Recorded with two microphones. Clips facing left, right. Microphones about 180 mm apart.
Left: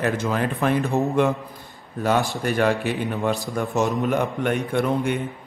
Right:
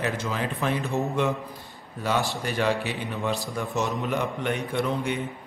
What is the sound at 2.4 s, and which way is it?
Speech, 50° left (ahead or behind).